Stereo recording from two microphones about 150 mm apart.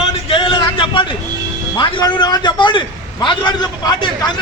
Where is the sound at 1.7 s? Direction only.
30° left (ahead or behind).